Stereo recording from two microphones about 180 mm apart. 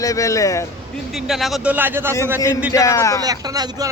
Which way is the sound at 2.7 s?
15° left (ahead or behind).